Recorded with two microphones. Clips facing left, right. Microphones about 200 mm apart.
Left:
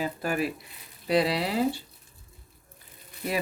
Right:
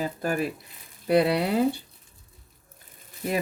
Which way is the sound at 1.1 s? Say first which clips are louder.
Right 3 dB; 55° right (ahead or behind).